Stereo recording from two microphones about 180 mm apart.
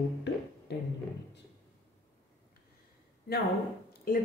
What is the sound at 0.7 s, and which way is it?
Speech, 70° left (ahead or behind).